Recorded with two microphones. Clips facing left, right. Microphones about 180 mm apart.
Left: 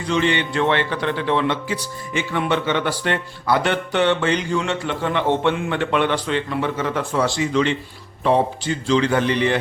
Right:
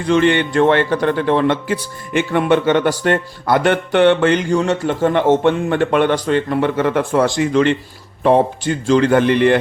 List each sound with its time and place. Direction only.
0.0 s a man's voice: 50° right (ahead or behind)